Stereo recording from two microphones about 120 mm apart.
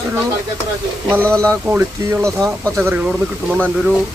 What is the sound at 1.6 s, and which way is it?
Speech, 20° right (ahead or behind).